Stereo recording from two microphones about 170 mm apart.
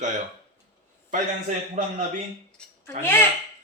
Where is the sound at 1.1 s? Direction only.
45° right (ahead or behind).